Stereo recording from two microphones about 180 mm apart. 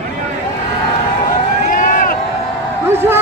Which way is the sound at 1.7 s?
45° left (ahead or behind).